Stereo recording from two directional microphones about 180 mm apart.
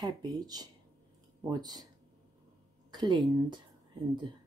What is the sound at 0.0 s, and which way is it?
Speech, 20° right (ahead or behind).